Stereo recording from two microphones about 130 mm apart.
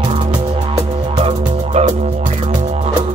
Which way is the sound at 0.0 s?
35° right (ahead or behind).